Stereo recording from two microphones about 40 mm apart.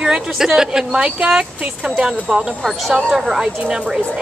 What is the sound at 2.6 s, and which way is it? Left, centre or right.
Speech, centre.